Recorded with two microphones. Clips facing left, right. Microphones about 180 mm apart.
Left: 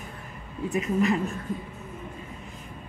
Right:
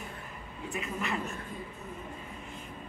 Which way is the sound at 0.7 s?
40° left (ahead or behind).